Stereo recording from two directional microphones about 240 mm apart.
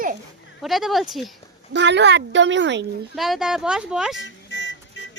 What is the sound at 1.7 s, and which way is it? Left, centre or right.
A woman's voice, right.